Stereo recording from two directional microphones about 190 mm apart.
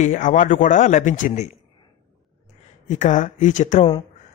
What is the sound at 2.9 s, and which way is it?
Speech, 40° left (ahead or behind).